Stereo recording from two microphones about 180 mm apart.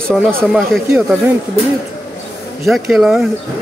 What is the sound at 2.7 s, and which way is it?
Speech, centre (ahead or behind).